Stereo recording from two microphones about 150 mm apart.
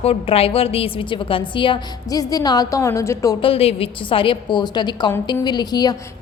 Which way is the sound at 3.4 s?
40° left (ahead or behind).